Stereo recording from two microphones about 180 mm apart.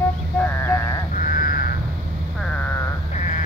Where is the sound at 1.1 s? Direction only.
50° left (ahead or behind).